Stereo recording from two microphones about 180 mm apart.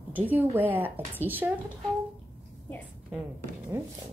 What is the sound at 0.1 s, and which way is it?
A woman's voice, 10° right (ahead or behind).